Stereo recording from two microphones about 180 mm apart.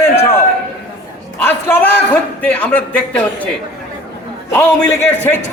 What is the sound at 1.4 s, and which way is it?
A man's voice, 10° left (ahead or behind).